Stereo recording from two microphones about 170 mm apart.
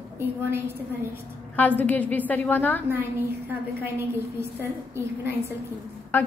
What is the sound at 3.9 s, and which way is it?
Speech, 15° right (ahead or behind).